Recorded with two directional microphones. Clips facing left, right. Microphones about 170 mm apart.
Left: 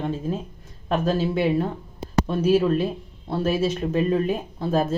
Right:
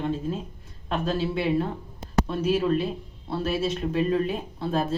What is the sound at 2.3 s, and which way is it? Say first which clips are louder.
Speech: left 5 dB; 50° left (ahead or behind).